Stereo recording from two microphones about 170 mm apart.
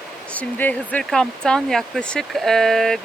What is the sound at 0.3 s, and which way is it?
Speech, 10° left (ahead or behind).